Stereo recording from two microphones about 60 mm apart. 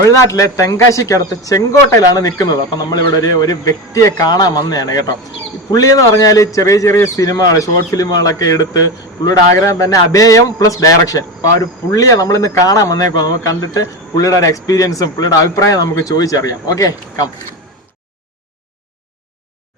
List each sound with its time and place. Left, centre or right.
0.1 s speech: left
1.5 s a man's voice: left
3.4 s a man's voice: left